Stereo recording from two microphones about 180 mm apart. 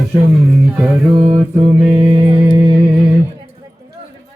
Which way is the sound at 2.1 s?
30° right (ahead or behind).